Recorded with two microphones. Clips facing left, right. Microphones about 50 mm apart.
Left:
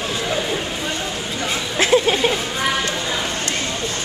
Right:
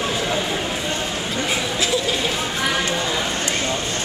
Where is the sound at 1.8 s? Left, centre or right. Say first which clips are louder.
Left 9 dB; left.